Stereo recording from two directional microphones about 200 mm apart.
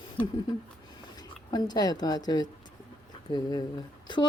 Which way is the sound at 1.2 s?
20° left (ahead or behind).